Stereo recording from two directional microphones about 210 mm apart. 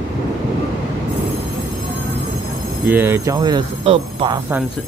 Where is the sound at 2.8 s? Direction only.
10° right (ahead or behind); by 4.3 s 25° right (ahead or behind).